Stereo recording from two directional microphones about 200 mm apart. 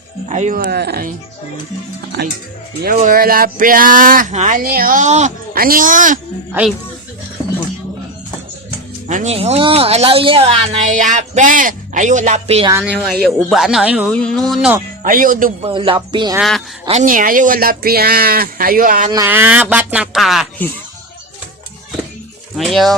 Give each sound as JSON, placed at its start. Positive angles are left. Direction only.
{"t": 0.3, "sound": "speech", "side_deg": -35}
{"t": 2.2, "sound": "speech", "side_deg": -55}
{"t": 2.8, "sound": "speech", "side_deg": -45}
{"t": 6.5, "sound": "speech", "side_deg": -5}
{"t": 9.0, "sound": "speech", "side_deg": -35}
{"t": 12.7, "sound": "speech", "side_deg": -5}
{"t": 15.0, "sound": "speech", "side_deg": -40}
{"t": 15.6, "sound": "speech", "side_deg": -25}
{"t": 16.4, "sound": "speech", "side_deg": 0}
{"t": 16.8, "sound": "speech", "side_deg": -35}
{"t": 19.1, "sound": "speech", "side_deg": -10}
{"t": 22.5, "sound": "speech", "side_deg": 0}